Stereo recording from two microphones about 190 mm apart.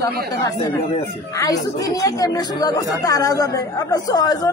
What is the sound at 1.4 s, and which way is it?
Speech, 20° left (ahead or behind).